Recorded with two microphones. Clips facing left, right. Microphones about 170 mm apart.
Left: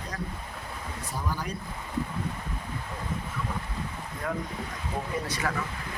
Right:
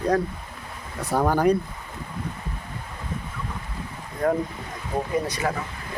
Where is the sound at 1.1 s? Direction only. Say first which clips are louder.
Right 15 dB; 65° right (ahead or behind).